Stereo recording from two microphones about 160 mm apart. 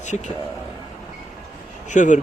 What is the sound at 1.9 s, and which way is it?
Speech, 50° left (ahead or behind).